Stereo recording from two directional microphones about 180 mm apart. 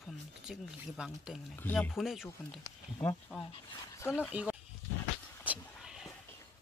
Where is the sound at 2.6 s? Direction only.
15° left (ahead or behind).